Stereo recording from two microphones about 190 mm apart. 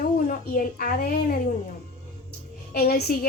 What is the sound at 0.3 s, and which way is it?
A woman's voice, 50° left (ahead or behind).